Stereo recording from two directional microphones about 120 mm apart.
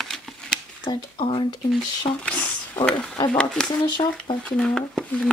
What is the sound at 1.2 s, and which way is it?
Speech, 45° left (ahead or behind).